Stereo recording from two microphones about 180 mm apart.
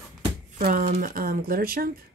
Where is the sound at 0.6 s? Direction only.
50° right (ahead or behind).